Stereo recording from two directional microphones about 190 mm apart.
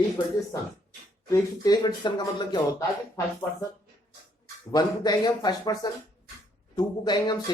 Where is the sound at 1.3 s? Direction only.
20° left (ahead or behind).